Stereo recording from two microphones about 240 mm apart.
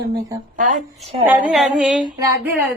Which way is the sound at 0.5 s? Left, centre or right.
Right.